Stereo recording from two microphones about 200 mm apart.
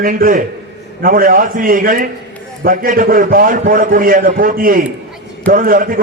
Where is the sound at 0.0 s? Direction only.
45° right (ahead or behind).